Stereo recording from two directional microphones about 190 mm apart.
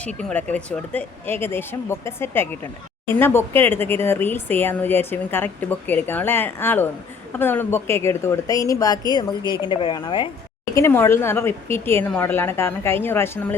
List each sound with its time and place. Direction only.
0.2 s speech: 5° left (ahead or behind); by 10.2 s 25° left (ahead or behind)
10.8 s speech: 15° left (ahead or behind)